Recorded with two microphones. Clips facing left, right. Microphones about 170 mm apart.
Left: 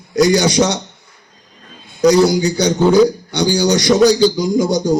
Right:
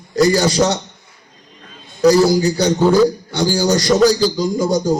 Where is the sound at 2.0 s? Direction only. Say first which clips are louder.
Even; centre (ahead or behind).